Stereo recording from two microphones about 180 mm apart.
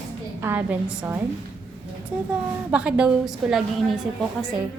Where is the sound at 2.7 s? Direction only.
5° right (ahead or behind).